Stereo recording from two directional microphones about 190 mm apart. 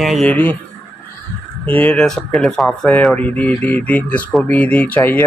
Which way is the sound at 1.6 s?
10° left (ahead or behind).